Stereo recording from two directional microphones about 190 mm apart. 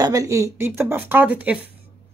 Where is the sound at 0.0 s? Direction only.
20° right (ahead or behind).